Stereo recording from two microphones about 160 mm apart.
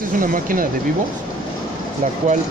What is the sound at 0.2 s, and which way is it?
Speech, 60° right (ahead or behind).